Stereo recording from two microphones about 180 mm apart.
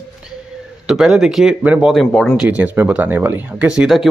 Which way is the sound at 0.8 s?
Centre (ahead or behind).